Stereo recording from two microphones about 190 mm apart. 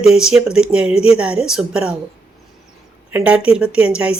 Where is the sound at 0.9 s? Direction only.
30° left (ahead or behind).